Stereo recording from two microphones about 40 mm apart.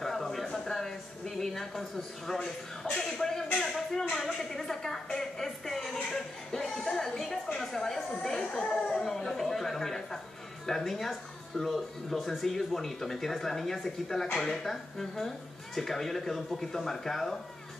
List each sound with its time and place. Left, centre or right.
0.0 s a sound: centre
7.5 s chatter: centre
10.7 s speech: centre